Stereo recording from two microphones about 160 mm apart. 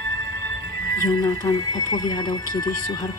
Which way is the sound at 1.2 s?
25° left (ahead or behind).